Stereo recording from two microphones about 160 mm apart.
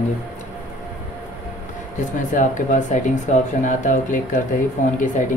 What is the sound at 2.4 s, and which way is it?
Speech, 50° left (ahead or behind).